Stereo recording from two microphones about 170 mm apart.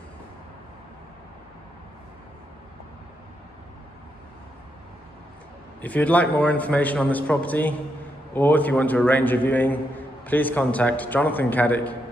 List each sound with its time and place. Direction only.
5.8 s a man's voice: 10° left (ahead or behind)